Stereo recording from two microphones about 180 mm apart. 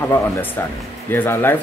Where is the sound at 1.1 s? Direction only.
10° left (ahead or behind).